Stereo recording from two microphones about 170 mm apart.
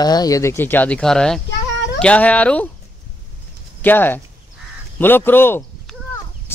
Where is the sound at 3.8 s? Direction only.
10° left (ahead or behind).